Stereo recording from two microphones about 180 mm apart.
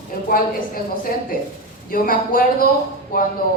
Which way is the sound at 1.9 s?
50° left (ahead or behind).